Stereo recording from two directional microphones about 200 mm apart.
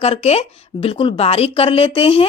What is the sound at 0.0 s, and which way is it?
Speech, 30° left (ahead or behind).